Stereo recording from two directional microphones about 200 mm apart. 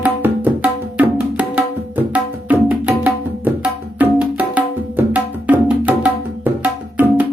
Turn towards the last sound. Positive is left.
turn(degrees=-10)  # may be behind; listen again after turning